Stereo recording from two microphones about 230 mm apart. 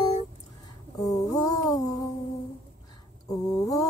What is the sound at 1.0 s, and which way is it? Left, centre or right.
Speech, centre.